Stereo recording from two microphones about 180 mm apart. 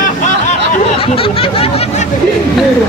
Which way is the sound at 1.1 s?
30° left (ahead or behind).